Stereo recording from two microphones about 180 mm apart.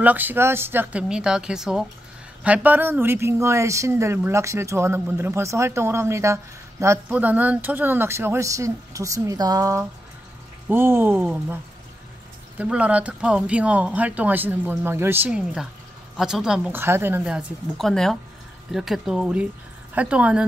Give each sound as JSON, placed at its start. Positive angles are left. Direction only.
{"t": 0.0, "sound": "a woman's voice", "side_deg": -10}